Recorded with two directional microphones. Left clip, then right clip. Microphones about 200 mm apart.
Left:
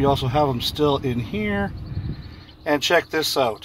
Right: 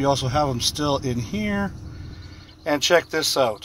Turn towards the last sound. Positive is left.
turn(degrees=-50)  # may be behind; listen again after turning